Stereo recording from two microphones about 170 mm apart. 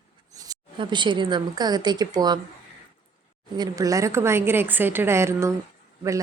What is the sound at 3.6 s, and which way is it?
A woman's voice, 20° right (ahead or behind).